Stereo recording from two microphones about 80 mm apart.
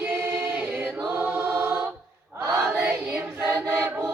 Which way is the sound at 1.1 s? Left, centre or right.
Right.